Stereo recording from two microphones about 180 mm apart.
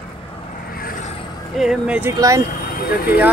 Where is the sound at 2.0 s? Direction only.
15° right (ahead or behind).